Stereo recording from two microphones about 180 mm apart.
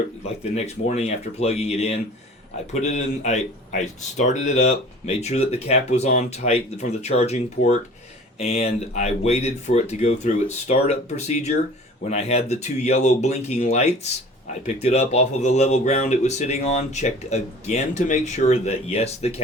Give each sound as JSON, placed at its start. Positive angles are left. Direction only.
{"t": 0.5, "sound": "speech", "side_deg": 35}